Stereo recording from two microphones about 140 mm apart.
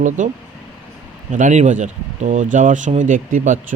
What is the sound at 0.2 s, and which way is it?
Speech, 65° right (ahead or behind).